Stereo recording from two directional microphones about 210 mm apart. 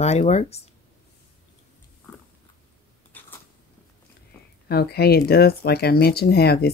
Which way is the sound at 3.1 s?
10° left (ahead or behind).